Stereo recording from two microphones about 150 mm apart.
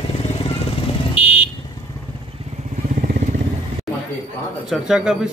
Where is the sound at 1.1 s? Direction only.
40° left (ahead or behind).